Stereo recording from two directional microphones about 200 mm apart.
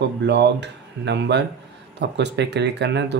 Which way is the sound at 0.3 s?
60° right (ahead or behind).